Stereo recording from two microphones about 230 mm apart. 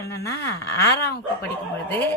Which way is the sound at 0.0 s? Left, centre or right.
Centre.